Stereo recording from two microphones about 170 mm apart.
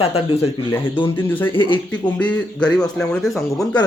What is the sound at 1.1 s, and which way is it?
A man's voice, 10° left (ahead or behind).